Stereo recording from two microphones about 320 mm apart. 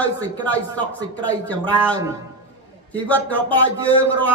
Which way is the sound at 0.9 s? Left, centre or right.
Centre.